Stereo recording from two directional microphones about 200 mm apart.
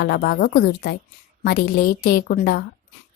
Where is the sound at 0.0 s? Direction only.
50° left (ahead or behind).